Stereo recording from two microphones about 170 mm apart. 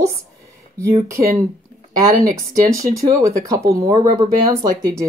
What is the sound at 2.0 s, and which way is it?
Speech, 20° right (ahead or behind).